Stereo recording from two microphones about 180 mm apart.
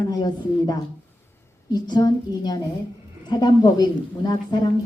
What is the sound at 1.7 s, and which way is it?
A woman's voice, 20° left (ahead or behind).